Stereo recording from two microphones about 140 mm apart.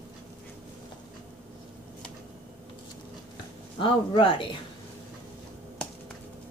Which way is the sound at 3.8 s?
35° left (ahead or behind).